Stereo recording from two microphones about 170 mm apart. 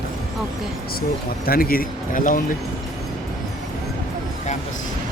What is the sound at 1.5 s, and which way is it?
Speech, 60° left (ahead or behind).